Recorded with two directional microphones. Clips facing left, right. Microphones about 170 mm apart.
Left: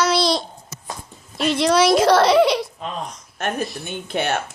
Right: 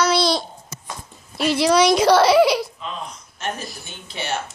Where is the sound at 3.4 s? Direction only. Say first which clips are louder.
Left 5 dB; 55° left (ahead or behind).